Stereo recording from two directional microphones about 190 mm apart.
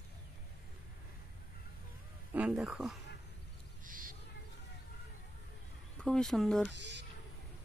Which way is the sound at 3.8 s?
45° right (ahead or behind).